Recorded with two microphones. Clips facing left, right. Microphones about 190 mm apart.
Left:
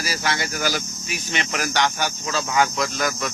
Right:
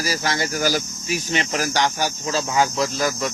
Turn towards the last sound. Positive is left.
turn(degrees=-30)  # may be behind; listen again after turning